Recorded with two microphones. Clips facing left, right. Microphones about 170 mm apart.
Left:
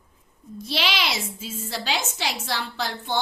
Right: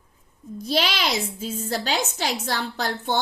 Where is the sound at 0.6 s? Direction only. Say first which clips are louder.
Right 3 dB; 45° right (ahead or behind).